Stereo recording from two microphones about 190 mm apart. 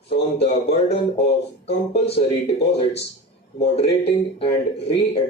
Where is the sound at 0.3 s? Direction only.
35° left (ahead or behind).